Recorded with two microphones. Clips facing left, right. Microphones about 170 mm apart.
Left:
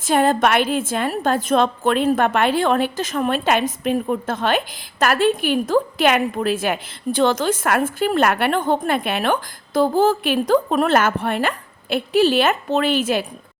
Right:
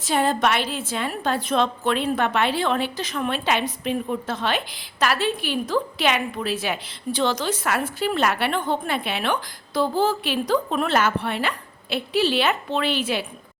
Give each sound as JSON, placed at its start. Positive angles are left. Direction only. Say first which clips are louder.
{"t": 0.0, "sound": "a woman's voice", "louder": "left 4 dB", "side_deg": 50}